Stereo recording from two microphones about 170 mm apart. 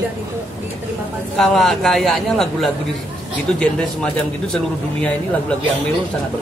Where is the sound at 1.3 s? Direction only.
Centre (ahead or behind).